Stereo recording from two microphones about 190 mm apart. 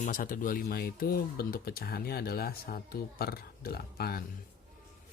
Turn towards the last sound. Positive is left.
turn(degrees=55)  # may be behind; listen again after turning